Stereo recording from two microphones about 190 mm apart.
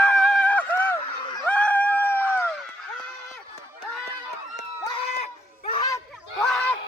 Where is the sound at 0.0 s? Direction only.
5° left (ahead or behind).